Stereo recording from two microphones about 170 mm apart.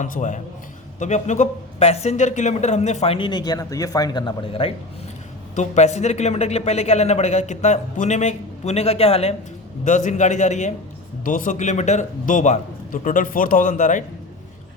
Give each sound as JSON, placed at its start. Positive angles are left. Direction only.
{"t": 0.0, "sound": "a man's voice", "side_deg": 45}
{"t": 5.5, "sound": "a man's voice", "side_deg": 40}
{"t": 9.8, "sound": "a man's voice", "side_deg": 45}